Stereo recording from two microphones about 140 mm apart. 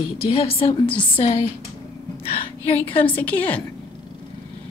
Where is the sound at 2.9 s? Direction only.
40° left (ahead or behind).